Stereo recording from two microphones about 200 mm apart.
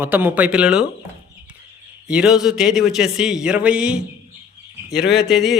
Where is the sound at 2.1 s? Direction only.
5° right (ahead or behind).